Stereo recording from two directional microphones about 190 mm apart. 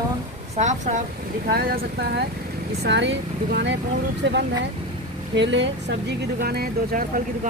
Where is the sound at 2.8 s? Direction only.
65° right (ahead or behind).